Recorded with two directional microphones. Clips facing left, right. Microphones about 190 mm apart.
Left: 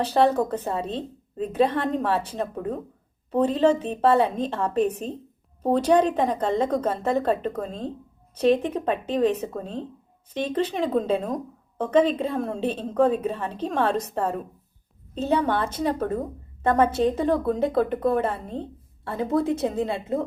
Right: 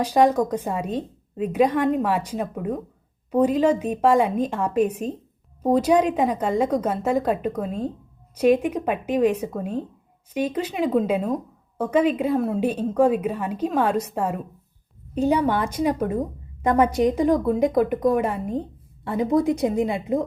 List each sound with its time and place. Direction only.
0.0 s a woman's voice: 10° right (ahead or behind)